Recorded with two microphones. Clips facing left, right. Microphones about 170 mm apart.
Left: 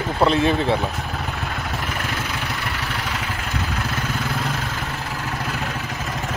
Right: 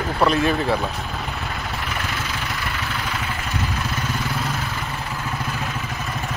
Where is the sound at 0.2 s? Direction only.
25° left (ahead or behind).